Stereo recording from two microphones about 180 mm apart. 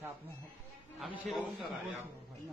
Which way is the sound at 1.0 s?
Centre (ahead or behind).